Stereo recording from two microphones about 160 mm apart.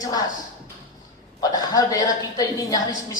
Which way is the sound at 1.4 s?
25° left (ahead or behind).